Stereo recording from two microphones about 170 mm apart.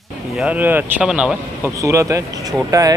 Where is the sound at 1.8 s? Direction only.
20° right (ahead or behind).